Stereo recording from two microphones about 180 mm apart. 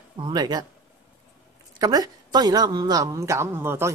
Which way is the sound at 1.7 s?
20° right (ahead or behind).